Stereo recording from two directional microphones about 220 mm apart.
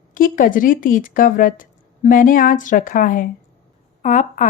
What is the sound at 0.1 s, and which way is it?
Speech, 40° left (ahead or behind).